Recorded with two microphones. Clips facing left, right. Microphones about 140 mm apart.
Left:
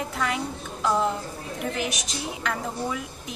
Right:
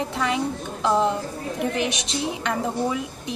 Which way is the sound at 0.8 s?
30° right (ahead or behind).